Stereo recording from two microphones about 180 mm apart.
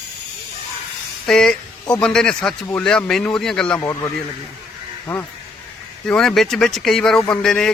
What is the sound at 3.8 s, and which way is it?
Speech, 15° left (ahead or behind).